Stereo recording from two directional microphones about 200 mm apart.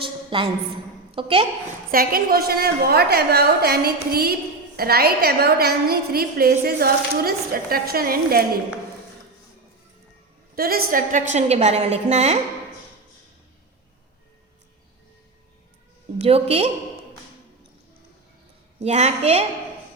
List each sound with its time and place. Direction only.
0.0 s a sound: 25° right (ahead or behind)
1.1 s a woman's voice: 25° right (ahead or behind)
1.9 s a woman's voice: 45° right (ahead or behind)
10.5 s a woman's voice: 50° right (ahead or behind)
16.1 s a woman's voice: 30° right (ahead or behind)
18.8 s a woman's voice: 35° right (ahead or behind)